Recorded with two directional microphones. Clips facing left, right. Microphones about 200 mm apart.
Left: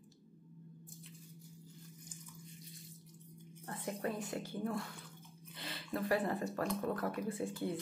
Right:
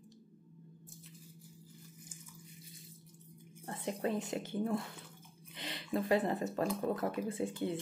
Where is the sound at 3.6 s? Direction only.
25° right (ahead or behind).